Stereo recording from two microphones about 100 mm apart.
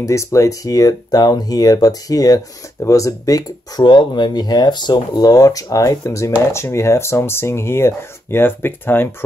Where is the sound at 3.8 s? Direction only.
50° left (ahead or behind).